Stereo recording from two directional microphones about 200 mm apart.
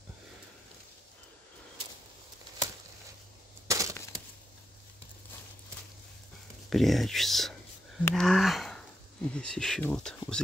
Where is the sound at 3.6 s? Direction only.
15° right (ahead or behind).